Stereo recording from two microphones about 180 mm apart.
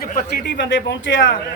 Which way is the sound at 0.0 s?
50° left (ahead or behind).